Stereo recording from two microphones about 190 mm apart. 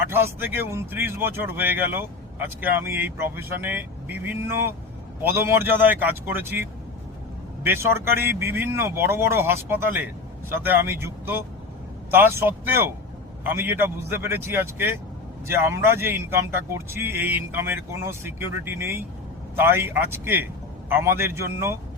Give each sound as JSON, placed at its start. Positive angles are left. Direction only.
{"t": 0.1, "sound": "speech", "side_deg": -10}
{"t": 12.5, "sound": "speech", "side_deg": -10}